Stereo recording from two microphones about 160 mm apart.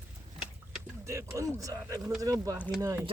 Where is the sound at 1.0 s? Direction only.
20° right (ahead or behind).